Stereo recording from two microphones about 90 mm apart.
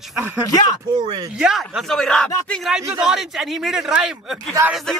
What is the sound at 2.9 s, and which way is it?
Speech, 10° right (ahead or behind).